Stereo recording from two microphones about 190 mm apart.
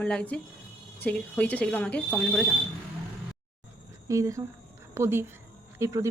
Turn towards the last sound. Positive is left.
turn(degrees=-15)  # may be behind; listen again after turning